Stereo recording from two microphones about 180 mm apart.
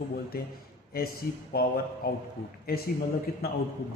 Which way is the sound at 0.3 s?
55° left (ahead or behind).